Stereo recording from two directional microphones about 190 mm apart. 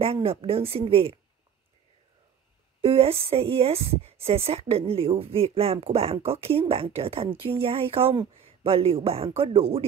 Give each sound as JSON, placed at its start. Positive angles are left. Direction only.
{"t": 0.0, "sound": "speech", "side_deg": -30}
{"t": 2.8, "sound": "a woman's voice", "side_deg": -30}